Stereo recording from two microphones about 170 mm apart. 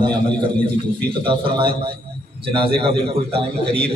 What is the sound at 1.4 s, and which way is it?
Speech, 60° right (ahead or behind).